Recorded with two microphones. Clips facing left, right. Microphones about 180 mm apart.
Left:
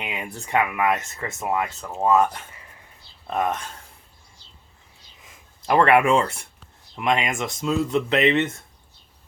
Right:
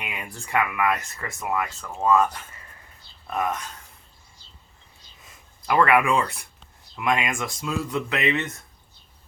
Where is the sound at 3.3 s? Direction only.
30° left (ahead or behind).